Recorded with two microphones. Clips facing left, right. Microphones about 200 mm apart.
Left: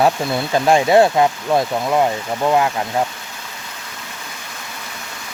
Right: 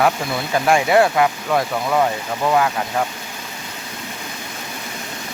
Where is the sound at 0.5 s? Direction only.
25° left (ahead or behind).